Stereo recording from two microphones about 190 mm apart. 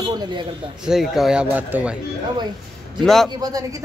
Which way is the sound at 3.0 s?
Centre (ahead or behind).